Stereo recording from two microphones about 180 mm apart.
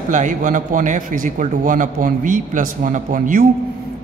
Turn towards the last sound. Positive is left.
turn(degrees=-50)  # may be behind; listen again after turning